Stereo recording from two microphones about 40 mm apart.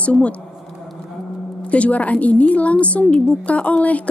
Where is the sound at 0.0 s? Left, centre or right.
Left.